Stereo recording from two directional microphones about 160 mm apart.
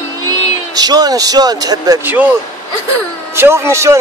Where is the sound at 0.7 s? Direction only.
25° right (ahead or behind).